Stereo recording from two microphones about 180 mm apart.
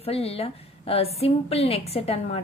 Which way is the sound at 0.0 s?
35° left (ahead or behind).